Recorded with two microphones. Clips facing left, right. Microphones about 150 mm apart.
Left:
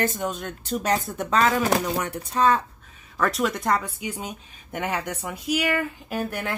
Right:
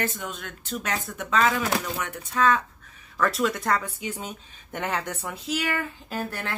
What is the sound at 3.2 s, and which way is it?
Speech, 20° left (ahead or behind).